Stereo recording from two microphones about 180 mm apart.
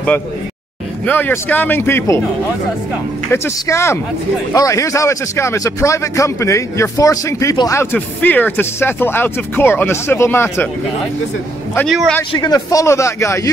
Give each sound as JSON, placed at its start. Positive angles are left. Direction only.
{"t": 1.0, "sound": "speech", "side_deg": 10}
{"t": 3.3, "sound": "speech", "side_deg": 15}
{"t": 11.9, "sound": "speech", "side_deg": 0}
{"t": 12.3, "sound": "speech", "side_deg": 20}